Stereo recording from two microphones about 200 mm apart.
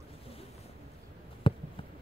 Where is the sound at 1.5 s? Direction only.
25° left (ahead or behind).